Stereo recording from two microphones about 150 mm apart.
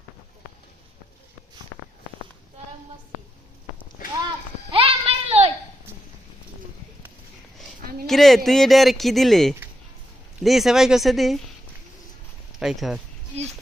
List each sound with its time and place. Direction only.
4.7 s a sound: 40° right (ahead or behind)
8.0 s speech: centre (ahead or behind)
12.5 s speech: centre (ahead or behind)